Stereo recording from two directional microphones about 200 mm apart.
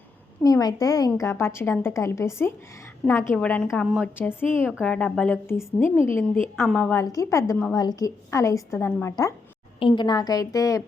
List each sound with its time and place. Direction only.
0.4 s a woman's voice: 15° left (ahead or behind)
6.6 s a woman's voice: centre (ahead or behind)
7.0 s a woman's voice: 15° left (ahead or behind)